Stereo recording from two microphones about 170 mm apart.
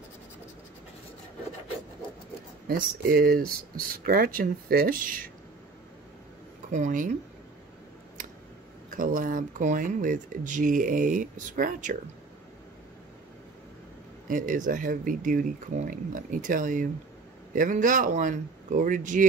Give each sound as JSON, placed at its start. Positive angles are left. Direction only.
{"t": 2.7, "sound": "speech", "side_deg": -60}
{"t": 6.7, "sound": "speech", "side_deg": -45}
{"t": 8.9, "sound": "speech", "side_deg": -50}
{"t": 14.2, "sound": "speech", "side_deg": -50}